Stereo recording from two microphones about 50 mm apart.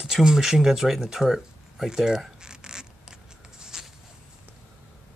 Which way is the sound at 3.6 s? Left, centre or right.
Centre.